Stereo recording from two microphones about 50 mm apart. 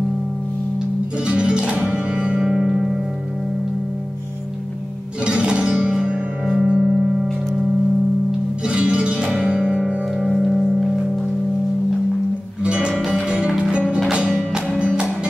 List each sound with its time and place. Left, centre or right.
1.2 s music: right
2.4 s music: centre
5.2 s music: right
8.6 s music: centre
10.1 s music: centre
12.6 s music: centre
13.0 s music: centre
13.3 s music: centre